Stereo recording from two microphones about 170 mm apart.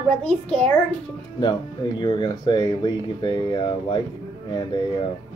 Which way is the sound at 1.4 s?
25° left (ahead or behind).